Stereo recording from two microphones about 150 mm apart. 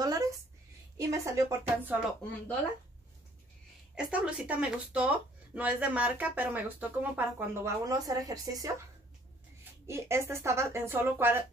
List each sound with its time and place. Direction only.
0.0 s a sound: 25° right (ahead or behind)
0.9 s speech: 20° right (ahead or behind)
3.9 s speech: 10° right (ahead or behind)
7.8 s speech: 25° right (ahead or behind)
9.8 s speech: 20° right (ahead or behind)